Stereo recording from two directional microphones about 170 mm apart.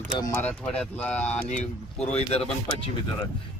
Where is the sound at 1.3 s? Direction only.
45° left (ahead or behind).